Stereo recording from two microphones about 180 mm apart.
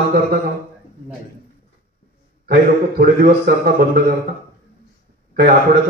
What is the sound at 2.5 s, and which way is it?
Speech, 55° right (ahead or behind).